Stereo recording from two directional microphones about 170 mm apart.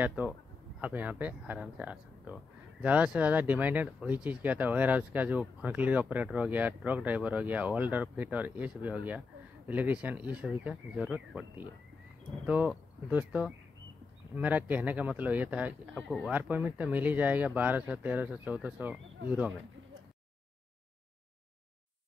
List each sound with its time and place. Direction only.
0.0 s speech: 10° right (ahead or behind)
16.3 s speech: 10° right (ahead or behind)